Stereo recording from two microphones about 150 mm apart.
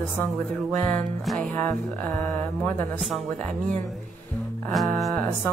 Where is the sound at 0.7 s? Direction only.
5° left (ahead or behind).